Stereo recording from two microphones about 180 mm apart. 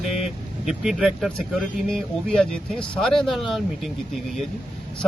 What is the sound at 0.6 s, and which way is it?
Speech, 5° right (ahead or behind).